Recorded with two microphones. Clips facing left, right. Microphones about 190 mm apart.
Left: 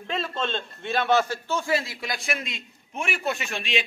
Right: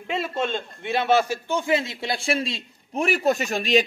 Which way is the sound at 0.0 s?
15° right (ahead or behind).